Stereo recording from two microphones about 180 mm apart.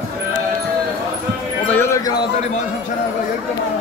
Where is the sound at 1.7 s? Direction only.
15° left (ahead or behind).